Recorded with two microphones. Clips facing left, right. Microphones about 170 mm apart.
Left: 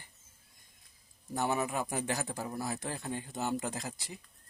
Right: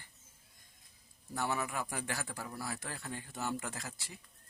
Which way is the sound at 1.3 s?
20° left (ahead or behind).